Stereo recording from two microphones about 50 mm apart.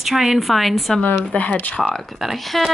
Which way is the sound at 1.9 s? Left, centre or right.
Centre.